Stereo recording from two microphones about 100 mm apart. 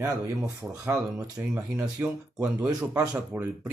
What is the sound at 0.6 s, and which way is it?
Speech, 5° right (ahead or behind).